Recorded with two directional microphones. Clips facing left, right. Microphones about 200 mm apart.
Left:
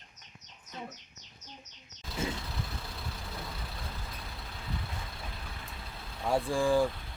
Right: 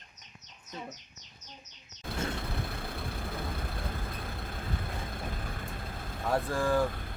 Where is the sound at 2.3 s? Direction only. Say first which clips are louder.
Right 3 dB; 55° right (ahead or behind).